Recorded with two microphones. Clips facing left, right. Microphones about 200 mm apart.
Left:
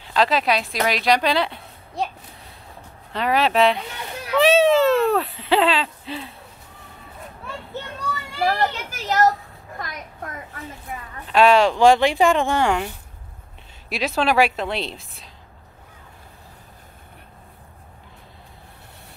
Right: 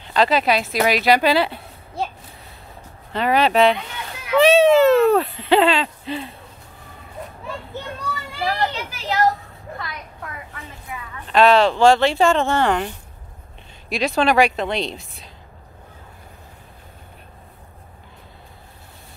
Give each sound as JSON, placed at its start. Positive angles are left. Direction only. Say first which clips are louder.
{"t": 0.1, "sound": "speech", "louder": "right 2 dB", "side_deg": 0}
{"t": 3.1, "sound": "a woman's voice", "louder": "right 2 dB", "side_deg": 0}
{"t": 8.4, "sound": "a sound", "louder": "left 2 dB", "side_deg": 50}
{"t": 11.2, "sound": "a woman's voice", "louder": "right 1 dB", "side_deg": 10}